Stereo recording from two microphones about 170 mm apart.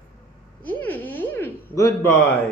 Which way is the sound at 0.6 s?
10° left (ahead or behind).